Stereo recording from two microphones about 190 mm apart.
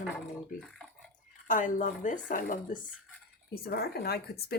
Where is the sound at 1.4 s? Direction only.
45° left (ahead or behind).